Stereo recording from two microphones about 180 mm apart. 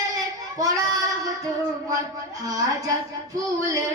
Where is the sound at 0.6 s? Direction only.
20° right (ahead or behind).